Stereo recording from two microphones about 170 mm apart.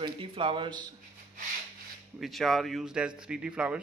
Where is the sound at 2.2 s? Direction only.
Centre (ahead or behind).